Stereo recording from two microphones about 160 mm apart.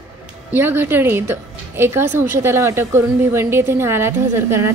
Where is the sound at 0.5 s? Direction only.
15° right (ahead or behind).